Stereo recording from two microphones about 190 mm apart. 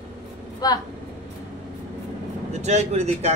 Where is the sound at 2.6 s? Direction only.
35° right (ahead or behind).